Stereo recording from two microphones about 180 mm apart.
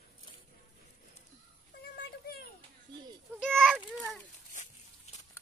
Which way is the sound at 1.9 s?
55° left (ahead or behind).